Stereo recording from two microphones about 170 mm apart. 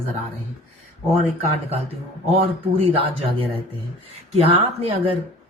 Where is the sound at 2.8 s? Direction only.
35° right (ahead or behind).